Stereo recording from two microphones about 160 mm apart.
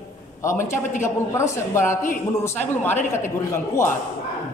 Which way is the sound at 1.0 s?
20° left (ahead or behind).